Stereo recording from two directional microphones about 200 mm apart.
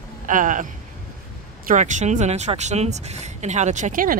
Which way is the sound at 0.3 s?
40° right (ahead or behind).